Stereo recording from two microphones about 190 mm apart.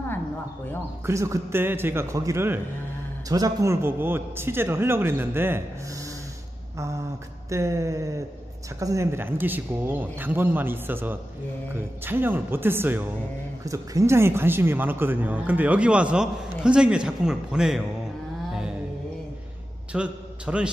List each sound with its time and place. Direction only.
1.0 s a man's voice: 15° right (ahead or behind)
7.4 s a man's voice: 15° right (ahead or behind)
19.9 s a man's voice: 5° right (ahead or behind)